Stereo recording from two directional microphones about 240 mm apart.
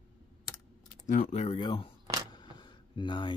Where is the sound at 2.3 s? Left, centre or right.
Centre.